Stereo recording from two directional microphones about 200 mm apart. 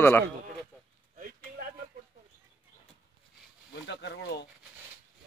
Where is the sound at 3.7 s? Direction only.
60° left (ahead or behind).